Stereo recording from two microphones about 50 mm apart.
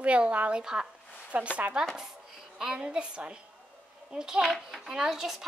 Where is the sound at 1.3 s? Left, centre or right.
Right.